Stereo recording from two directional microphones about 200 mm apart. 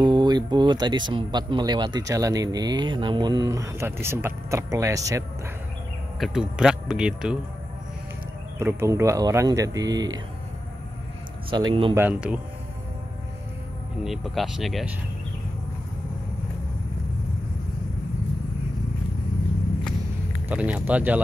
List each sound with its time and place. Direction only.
0.0 s speech: 20° right (ahead or behind)
6.1 s speech: centre (ahead or behind)
8.5 s speech: 15° right (ahead or behind)
11.5 s speech: 25° right (ahead or behind)
12.0 s speech: 5° right (ahead or behind)
14.0 s speech: centre (ahead or behind)
20.4 s speech: 5° right (ahead or behind)